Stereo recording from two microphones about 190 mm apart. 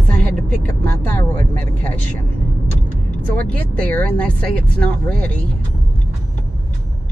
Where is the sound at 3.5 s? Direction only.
10° left (ahead or behind).